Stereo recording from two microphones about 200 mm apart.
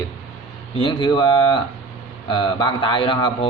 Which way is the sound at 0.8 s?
25° left (ahead or behind).